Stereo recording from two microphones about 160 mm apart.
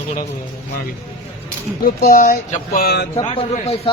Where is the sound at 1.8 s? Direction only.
60° left (ahead or behind).